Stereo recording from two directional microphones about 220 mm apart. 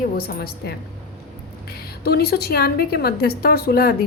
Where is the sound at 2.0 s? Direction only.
45° left (ahead or behind).